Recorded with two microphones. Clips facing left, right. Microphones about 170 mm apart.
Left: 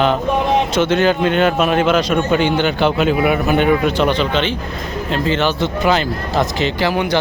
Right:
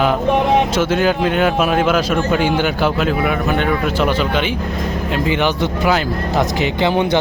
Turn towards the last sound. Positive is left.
turn(degrees=-25)  # may be behind; listen again after turning